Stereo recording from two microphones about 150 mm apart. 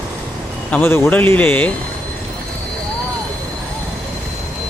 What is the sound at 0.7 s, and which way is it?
Speech, 10° left (ahead or behind).